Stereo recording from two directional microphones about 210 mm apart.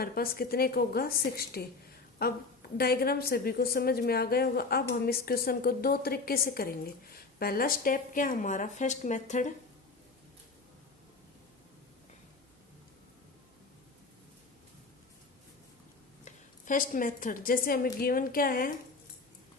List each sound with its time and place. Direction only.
0.0 s a woman's voice: 45° left (ahead or behind)
16.2 s a woman's voice: 40° left (ahead or behind)